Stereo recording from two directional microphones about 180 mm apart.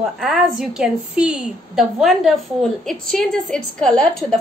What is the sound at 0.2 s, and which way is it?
A woman's voice, centre (ahead or behind).